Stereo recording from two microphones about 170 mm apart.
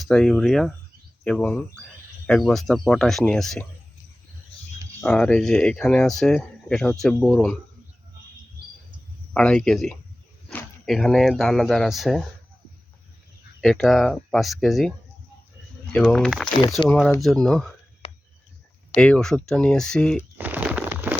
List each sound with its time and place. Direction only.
0.0 s speech: centre (ahead or behind)
4.9 s speech: 5° left (ahead or behind)
9.3 s speech: 5° left (ahead or behind)
13.6 s speech: centre (ahead or behind)
18.9 s speech: 5° left (ahead or behind)
20.4 s a sound: 10° right (ahead or behind)